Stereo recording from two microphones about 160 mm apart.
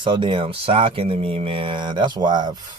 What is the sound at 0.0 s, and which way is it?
Speech, 30° right (ahead or behind).